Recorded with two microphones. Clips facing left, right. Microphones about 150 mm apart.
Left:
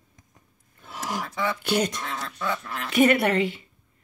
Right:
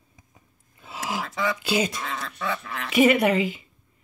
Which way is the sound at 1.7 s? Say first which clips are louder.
Even; 5° right (ahead or behind).